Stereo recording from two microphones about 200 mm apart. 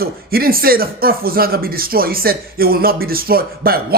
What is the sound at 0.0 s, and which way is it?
Speech, 50° right (ahead or behind).